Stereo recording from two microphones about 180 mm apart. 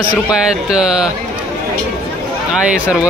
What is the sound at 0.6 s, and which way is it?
Speech, 5° right (ahead or behind).